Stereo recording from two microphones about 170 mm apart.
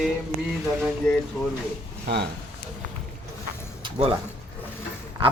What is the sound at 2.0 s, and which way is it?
Speech, 75° right (ahead or behind).